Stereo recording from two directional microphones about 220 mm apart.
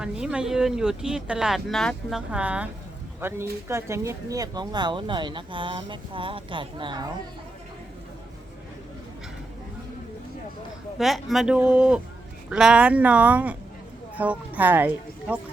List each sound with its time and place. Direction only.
0.0 s speech: 5° right (ahead or behind); by 7.1 s 20° right (ahead or behind)
10.9 s speech: centre (ahead or behind)